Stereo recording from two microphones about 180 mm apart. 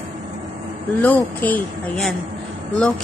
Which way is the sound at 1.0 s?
10° left (ahead or behind).